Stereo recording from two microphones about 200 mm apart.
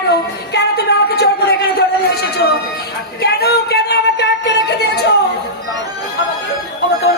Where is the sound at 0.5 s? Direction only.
55° left (ahead or behind).